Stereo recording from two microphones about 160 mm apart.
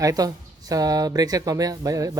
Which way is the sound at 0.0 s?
20° right (ahead or behind).